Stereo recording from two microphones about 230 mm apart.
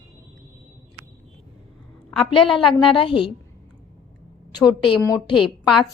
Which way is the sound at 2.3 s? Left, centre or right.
Left.